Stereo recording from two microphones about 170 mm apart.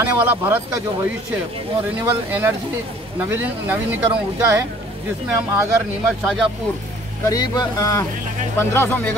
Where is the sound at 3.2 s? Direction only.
10° right (ahead or behind).